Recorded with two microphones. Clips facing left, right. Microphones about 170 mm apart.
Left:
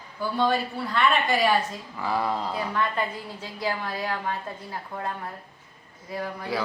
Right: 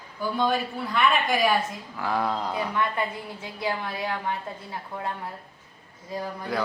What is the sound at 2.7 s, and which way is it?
A woman's voice, 15° right (ahead or behind).